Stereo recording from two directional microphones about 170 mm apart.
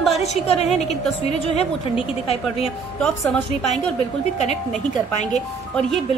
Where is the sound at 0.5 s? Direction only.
40° left (ahead or behind).